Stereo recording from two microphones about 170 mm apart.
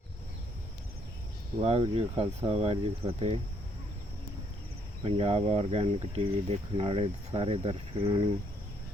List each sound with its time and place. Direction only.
1.6 s speech: 35° right (ahead or behind)
5.0 s speech: 35° right (ahead or behind)